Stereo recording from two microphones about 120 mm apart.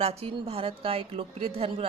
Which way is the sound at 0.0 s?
55° right (ahead or behind).